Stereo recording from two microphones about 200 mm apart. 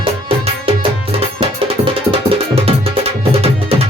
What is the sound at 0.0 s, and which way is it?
Music, 25° right (ahead or behind).